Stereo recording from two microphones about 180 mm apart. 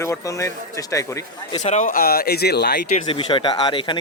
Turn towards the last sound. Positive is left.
turn(degrees=25)  # may be behind; listen again after turning